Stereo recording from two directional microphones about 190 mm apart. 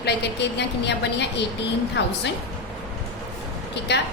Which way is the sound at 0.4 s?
65° left (ahead or behind).